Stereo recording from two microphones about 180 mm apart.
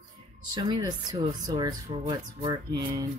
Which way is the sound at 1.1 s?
20° right (ahead or behind).